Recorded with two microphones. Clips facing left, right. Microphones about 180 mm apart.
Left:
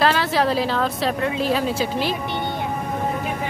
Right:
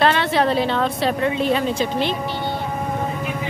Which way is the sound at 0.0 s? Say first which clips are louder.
Right 1 dB; centre (ahead or behind).